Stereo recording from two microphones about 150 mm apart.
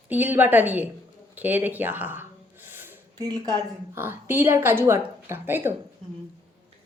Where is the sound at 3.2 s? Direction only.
25° right (ahead or behind).